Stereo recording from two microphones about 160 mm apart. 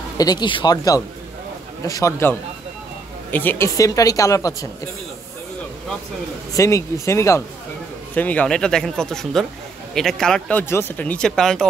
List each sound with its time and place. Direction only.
0.2 s speech: 25° left (ahead or behind)
6.5 s speech: 20° left (ahead or behind); by 11.6 s 5° left (ahead or behind)